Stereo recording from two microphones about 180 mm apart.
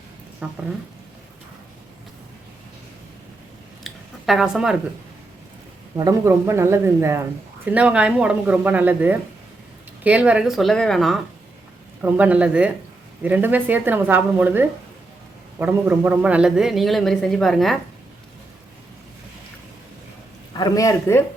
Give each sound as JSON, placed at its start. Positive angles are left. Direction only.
{"t": 0.4, "sound": "a man's voice", "side_deg": -5}
{"t": 3.8, "sound": "a sound", "side_deg": 0}
{"t": 6.1, "sound": "a man's voice", "side_deg": -15}
{"t": 20.5, "sound": "speech", "side_deg": 25}